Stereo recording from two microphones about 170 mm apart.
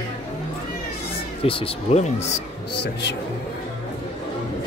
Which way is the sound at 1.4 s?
35° left (ahead or behind).